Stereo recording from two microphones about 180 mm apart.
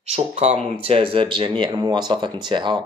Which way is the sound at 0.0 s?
35° right (ahead or behind).